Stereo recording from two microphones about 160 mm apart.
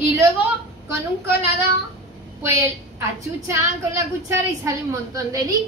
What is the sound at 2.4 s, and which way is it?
A woman's voice, 20° right (ahead or behind).